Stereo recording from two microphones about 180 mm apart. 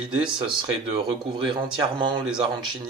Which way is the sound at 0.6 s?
25° right (ahead or behind).